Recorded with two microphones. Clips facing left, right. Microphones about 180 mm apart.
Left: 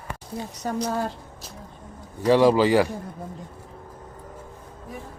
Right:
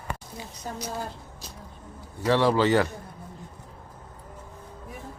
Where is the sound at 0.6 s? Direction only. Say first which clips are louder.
Left 8 dB; 70° left (ahead or behind).